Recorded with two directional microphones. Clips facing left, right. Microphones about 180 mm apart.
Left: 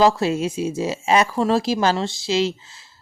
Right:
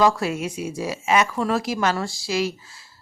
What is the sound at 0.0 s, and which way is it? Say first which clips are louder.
Speech: left 3 dB; 25° left (ahead or behind).